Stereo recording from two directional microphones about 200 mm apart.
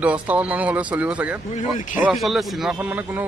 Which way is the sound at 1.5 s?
40° left (ahead or behind).